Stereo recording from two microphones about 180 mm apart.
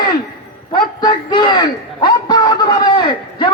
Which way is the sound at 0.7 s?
25° left (ahead or behind).